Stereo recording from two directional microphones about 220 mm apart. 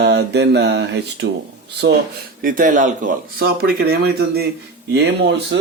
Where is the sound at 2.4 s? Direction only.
40° right (ahead or behind).